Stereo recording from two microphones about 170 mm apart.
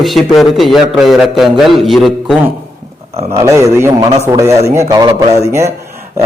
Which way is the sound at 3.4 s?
15° right (ahead or behind).